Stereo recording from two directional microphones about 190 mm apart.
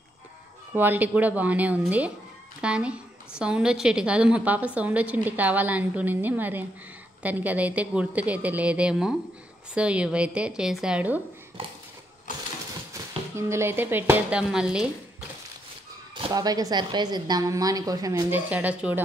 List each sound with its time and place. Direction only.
0.7 s a woman's voice: 10° right (ahead or behind)
12.9 s speech: 15° right (ahead or behind)
16.3 s a woman's voice: 20° right (ahead or behind)